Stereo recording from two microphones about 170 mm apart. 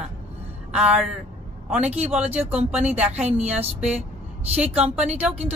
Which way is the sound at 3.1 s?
40° right (ahead or behind).